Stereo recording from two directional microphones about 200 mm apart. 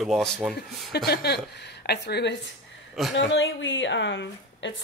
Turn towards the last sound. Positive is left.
turn(degrees=65)  # may be behind; listen again after turning